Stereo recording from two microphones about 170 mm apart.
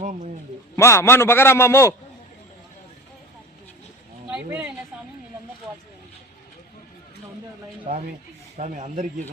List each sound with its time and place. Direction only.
0.0 s a man's voice: 45° right (ahead or behind)
0.8 s a man's voice: 15° left (ahead or behind)
4.3 s speech: 10° right (ahead or behind)
7.9 s speech: 40° right (ahead or behind)